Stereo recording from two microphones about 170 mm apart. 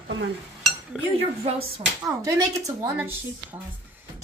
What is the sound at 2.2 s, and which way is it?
A woman's voice, 20° right (ahead or behind).